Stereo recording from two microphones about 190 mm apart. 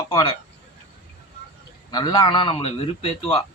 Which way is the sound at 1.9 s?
20° left (ahead or behind).